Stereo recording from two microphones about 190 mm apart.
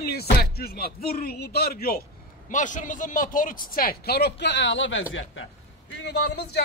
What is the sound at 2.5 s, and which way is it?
A man's voice, 40° left (ahead or behind).